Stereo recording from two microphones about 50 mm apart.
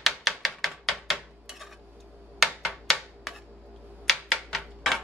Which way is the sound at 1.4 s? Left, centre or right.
Centre.